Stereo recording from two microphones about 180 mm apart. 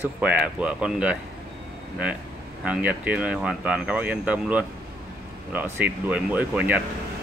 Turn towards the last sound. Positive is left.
turn(degrees=-10)  # may be behind; listen again after turning